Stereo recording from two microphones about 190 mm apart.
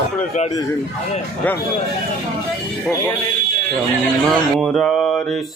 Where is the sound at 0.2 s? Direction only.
40° left (ahead or behind).